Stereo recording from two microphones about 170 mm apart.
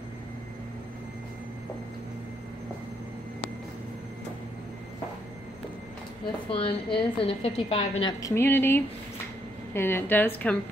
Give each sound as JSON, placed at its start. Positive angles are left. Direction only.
{"t": 6.5, "sound": "a woman's voice", "side_deg": 30}